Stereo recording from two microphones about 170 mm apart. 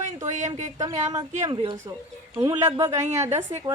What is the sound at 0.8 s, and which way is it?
A woman's voice, 20° right (ahead or behind).